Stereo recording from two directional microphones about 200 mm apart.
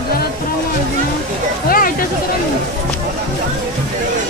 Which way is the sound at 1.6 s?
45° left (ahead or behind).